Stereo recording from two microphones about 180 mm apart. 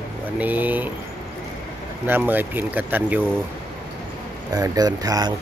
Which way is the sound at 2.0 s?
10° right (ahead or behind).